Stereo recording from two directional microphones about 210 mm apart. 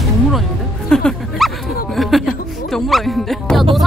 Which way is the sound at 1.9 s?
Centre (ahead or behind).